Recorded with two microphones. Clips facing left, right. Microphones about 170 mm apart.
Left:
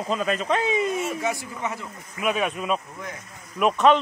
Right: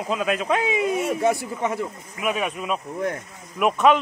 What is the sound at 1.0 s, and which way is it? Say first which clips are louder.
Speech: right 5 dB; 55° right (ahead or behind).